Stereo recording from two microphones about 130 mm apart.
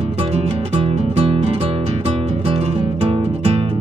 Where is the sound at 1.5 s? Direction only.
50° right (ahead or behind).